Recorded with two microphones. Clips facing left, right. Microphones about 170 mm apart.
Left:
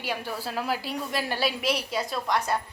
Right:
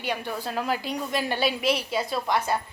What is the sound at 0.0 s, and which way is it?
A woman's voice, 5° left (ahead or behind).